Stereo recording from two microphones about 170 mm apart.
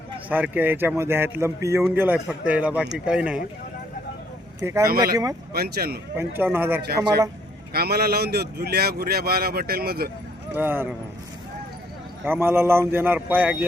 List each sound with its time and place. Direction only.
0.3 s a man's voice: 10° right (ahead or behind)
4.6 s a man's voice: 15° right (ahead or behind)
5.5 s speech: 65° right (ahead or behind)
6.1 s a man's voice: 15° right (ahead or behind)
7.7 s speech: 70° right (ahead or behind)
10.5 s a man's voice: 10° right (ahead or behind)
12.2 s a man's voice: 10° right (ahead or behind)